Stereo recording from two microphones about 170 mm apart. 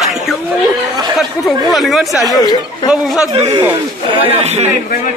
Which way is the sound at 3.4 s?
35° right (ahead or behind).